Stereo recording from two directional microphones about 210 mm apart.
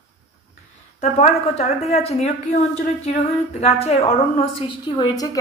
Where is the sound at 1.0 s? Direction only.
30° left (ahead or behind).